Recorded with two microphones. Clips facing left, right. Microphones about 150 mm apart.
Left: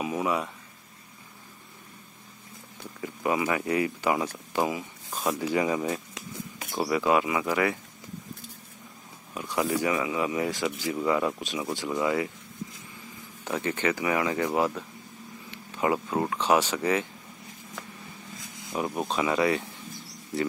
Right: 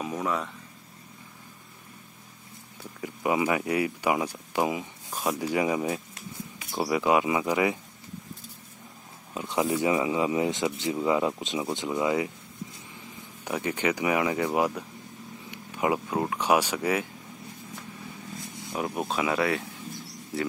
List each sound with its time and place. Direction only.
0.0 s speech: 10° left (ahead or behind)
3.0 s speech: 15° right (ahead or behind)
9.3 s speech: 25° right (ahead or behind)
13.4 s speech: 10° right (ahead or behind)
18.7 s speech: centre (ahead or behind)